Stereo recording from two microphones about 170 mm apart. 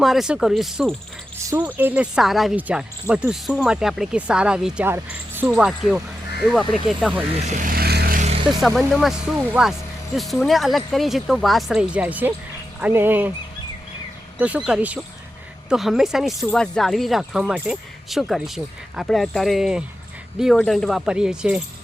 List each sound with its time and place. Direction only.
0.0 s speech: centre (ahead or behind)
7.4 s vehicle: 45° right (ahead or behind); by 8.2 s 65° right (ahead or behind)
8.4 s speech: centre (ahead or behind)
14.3 s speech: 10° right (ahead or behind)